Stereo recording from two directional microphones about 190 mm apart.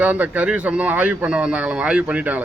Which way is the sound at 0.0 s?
10° right (ahead or behind).